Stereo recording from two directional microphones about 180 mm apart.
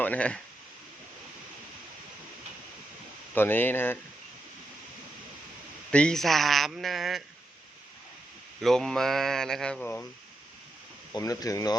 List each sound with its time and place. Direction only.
0.0 s speech: 10° left (ahead or behind)
3.3 s speech: 10° left (ahead or behind)
5.9 s speech: 5° left (ahead or behind)
8.6 s speech: centre (ahead or behind)
11.1 s speech: 20° left (ahead or behind)